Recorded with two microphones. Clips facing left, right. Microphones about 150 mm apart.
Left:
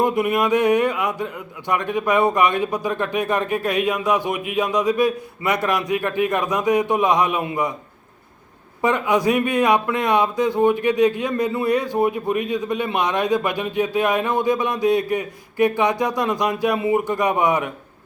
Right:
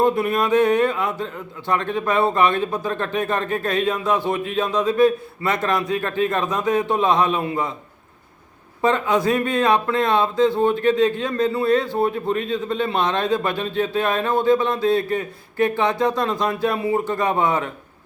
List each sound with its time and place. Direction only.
0.0 s speech: 15° left (ahead or behind)
8.8 s speech: 15° left (ahead or behind)